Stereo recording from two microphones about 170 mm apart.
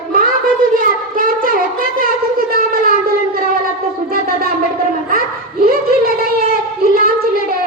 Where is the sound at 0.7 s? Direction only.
55° right (ahead or behind).